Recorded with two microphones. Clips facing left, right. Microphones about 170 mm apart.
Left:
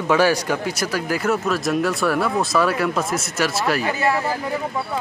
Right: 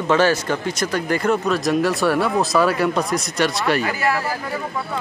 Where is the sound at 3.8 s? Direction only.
25° left (ahead or behind).